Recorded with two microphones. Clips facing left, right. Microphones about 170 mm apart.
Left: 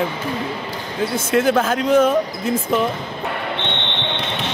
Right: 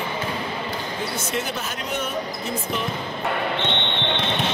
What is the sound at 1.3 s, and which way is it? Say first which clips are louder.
Speech: left 11 dB; 90° left.